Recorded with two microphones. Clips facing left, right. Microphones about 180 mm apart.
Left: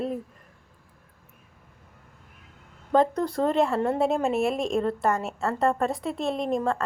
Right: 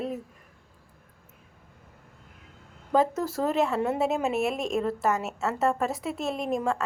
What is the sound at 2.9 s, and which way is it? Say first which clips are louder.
Speech: left 2 dB; 5° right (ahead or behind).